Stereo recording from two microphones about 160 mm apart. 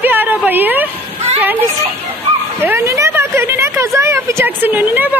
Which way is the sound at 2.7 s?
15° right (ahead or behind).